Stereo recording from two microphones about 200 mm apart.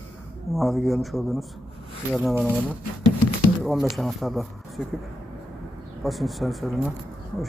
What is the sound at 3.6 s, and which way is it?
Speech, centre (ahead or behind).